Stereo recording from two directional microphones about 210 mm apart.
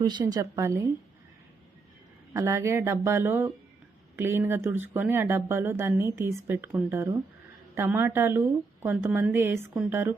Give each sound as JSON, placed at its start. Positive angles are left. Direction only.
{"t": 0.0, "sound": "speech", "side_deg": -20}
{"t": 2.3, "sound": "speech", "side_deg": -15}